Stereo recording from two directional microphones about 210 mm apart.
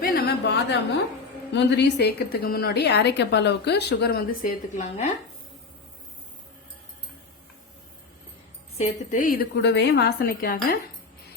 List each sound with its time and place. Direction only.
0.0 s a sound: 45° left (ahead or behind)
1.5 s a woman's voice: 55° left (ahead or behind); by 5.1 s 35° left (ahead or behind)
8.8 s a woman's voice: 35° left (ahead or behind)